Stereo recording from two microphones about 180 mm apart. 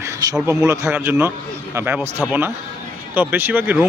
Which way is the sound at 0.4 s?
15° right (ahead or behind).